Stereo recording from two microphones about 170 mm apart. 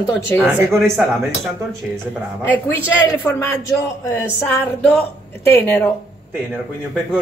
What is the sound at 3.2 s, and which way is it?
Speech, 15° left (ahead or behind).